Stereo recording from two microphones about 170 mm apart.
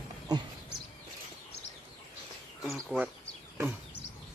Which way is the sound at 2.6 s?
Centre (ahead or behind).